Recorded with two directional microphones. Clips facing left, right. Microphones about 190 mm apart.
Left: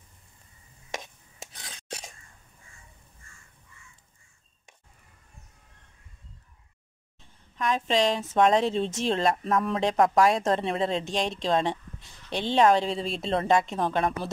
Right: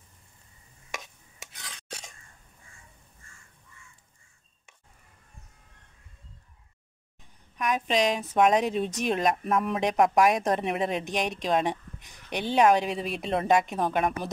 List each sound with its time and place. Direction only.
7.5 s speech: 15° right (ahead or behind)